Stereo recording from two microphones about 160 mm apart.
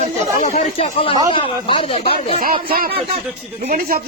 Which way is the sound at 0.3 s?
50° left (ahead or behind).